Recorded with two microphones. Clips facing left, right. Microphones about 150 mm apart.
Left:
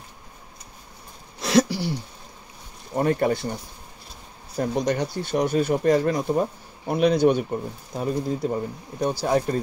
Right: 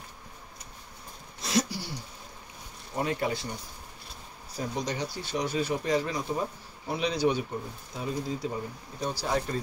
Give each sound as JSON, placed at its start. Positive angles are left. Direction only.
{"t": 1.4, "sound": "a sound", "side_deg": 75}
{"t": 3.0, "sound": "speech", "side_deg": 50}
{"t": 4.6, "sound": "speech", "side_deg": 55}